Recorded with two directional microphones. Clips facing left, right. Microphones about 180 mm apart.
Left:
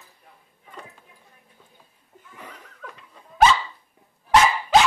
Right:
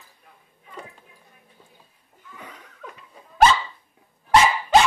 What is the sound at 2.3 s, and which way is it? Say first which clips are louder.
Laughter: even; centre (ahead or behind).